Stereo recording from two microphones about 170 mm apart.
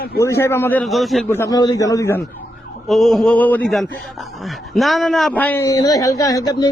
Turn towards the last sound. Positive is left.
turn(degrees=20)  # may be behind; listen again after turning